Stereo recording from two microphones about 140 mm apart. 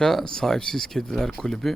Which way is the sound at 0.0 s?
5° left (ahead or behind).